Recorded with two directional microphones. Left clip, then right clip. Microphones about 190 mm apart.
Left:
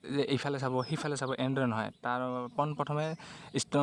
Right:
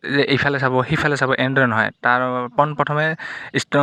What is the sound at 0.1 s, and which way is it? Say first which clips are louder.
Speech: right 14 dB; 15° right (ahead or behind).